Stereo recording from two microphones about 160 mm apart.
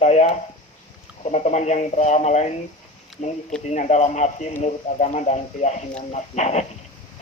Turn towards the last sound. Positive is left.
turn(degrees=45)  # may be behind; listen again after turning